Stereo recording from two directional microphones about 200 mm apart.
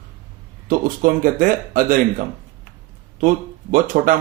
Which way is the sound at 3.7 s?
40° right (ahead or behind).